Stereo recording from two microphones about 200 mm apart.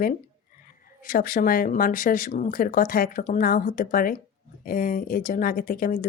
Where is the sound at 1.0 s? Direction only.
45° left (ahead or behind).